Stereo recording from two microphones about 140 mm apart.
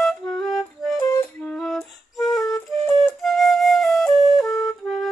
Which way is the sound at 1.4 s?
5° left (ahead or behind).